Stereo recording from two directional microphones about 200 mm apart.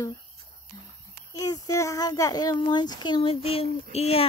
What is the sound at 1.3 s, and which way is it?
A child's voice, 15° left (ahead or behind).